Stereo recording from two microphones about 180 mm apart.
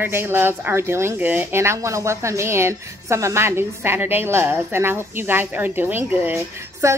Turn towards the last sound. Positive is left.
turn(degrees=-15)  # may be behind; listen again after turning